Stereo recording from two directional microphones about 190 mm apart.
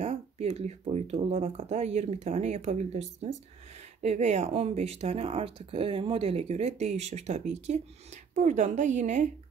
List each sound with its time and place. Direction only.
0.0 s speech: 35° right (ahead or behind)